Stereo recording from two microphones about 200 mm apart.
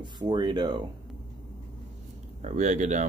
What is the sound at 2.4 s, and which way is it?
Speech, 35° right (ahead or behind).